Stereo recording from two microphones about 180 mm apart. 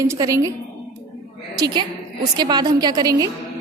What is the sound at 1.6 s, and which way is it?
A woman's voice, 25° right (ahead or behind).